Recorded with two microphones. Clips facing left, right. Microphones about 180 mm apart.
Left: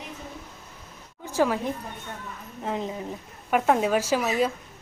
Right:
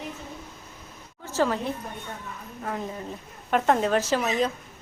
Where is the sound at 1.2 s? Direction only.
15° left (ahead or behind).